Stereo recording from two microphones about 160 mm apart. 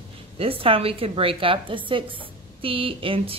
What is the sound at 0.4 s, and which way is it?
A woman's voice, 35° right (ahead or behind).